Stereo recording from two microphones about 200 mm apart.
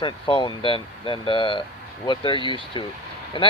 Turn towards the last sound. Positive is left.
turn(degrees=25)  # may be behind; listen again after turning